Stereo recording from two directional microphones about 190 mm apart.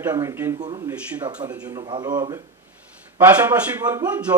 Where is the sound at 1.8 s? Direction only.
20° right (ahead or behind).